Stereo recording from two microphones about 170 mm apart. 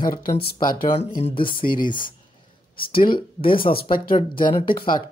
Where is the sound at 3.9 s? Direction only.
55° left (ahead or behind).